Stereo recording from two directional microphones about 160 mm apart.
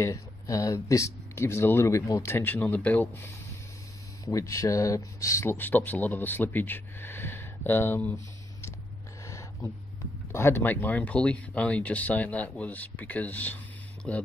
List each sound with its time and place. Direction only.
0.0 s speech: 20° left (ahead or behind)
9.2 s a sound: 20° left (ahead or behind)
10.3 s speech: 15° left (ahead or behind)